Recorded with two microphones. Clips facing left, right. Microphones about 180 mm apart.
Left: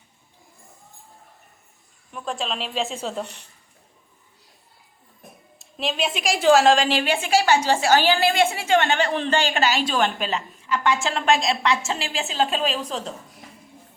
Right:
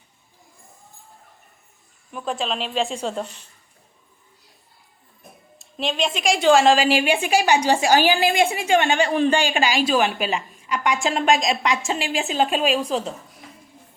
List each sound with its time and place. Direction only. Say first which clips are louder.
2.1 s speech: right 3 dB; centre (ahead or behind)
5.5 s a sound: right 2 dB; centre (ahead or behind)
6.1 s speech: even; centre (ahead or behind)
6.8 s a woman's voice: right 3 dB; 10° right (ahead or behind)